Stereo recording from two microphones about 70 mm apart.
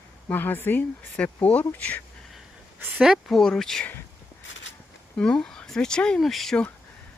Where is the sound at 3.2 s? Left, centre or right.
Centre.